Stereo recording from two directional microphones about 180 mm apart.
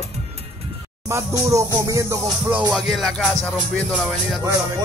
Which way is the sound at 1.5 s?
15° right (ahead or behind).